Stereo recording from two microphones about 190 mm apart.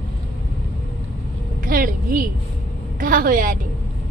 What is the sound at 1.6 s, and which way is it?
A woman's voice, 50° right (ahead or behind).